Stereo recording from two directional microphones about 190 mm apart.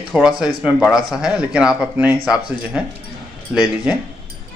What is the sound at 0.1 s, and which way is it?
Speech, 5° right (ahead or behind).